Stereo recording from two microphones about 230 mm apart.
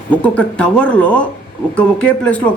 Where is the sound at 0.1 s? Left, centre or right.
Centre.